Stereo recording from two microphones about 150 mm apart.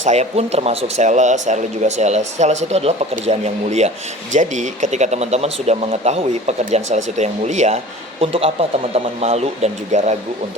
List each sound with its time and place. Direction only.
0.0 s speech: 50° right (ahead or behind)
8.2 s speech: 40° right (ahead or behind)